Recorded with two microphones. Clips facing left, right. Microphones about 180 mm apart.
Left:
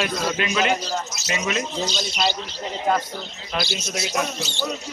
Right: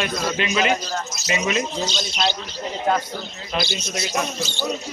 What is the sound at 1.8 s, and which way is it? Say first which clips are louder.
A man's voice: even; 10° left (ahead or behind).